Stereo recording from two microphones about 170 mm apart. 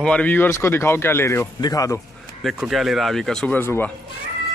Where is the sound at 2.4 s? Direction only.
Centre (ahead or behind).